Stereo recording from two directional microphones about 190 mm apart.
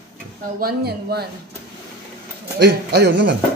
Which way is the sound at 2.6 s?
60° right (ahead or behind).